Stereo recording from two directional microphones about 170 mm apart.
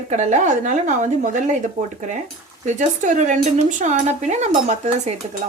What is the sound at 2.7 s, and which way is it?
Speech, 45° right (ahead or behind).